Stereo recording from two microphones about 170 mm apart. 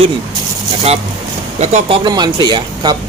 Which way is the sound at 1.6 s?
40° right (ahead or behind).